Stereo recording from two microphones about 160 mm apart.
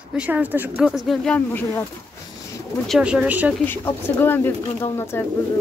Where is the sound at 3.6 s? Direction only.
15° left (ahead or behind).